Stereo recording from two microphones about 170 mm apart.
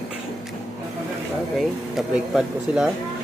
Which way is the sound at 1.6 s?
Centre (ahead or behind).